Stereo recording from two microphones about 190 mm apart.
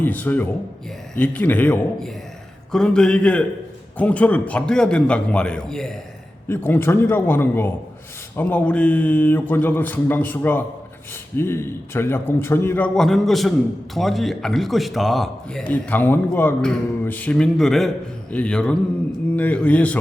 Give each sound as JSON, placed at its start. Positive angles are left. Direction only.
{"t": 0.0, "sound": "a man's voice", "side_deg": 10}